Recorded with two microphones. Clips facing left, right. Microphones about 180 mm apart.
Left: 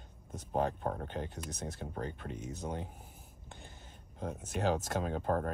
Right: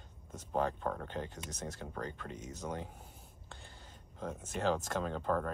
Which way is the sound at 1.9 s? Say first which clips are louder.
Left 3 dB; 20° left (ahead or behind).